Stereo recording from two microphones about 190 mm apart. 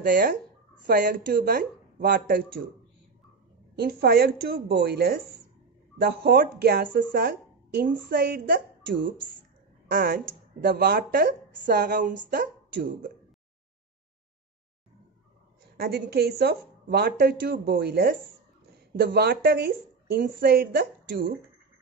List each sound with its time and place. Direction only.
0.0 s speech: 45° right (ahead or behind)
3.7 s a woman's voice: 55° right (ahead or behind)
11.5 s speech: 45° right (ahead or behind)
15.8 s a woman's voice: 55° right (ahead or behind)